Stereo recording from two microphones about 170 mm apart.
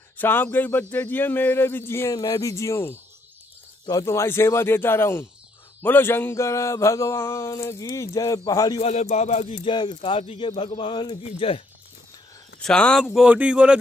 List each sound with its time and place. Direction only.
0.2 s a sound: 10° left (ahead or behind)
8.8 s speech: 40° left (ahead or behind)
12.6 s speech: 5° left (ahead or behind)